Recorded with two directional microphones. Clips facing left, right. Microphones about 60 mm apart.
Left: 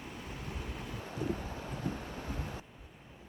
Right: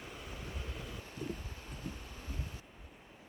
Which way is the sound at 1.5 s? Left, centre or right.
Left.